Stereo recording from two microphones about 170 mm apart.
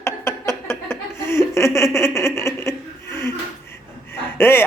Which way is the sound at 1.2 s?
15° left (ahead or behind).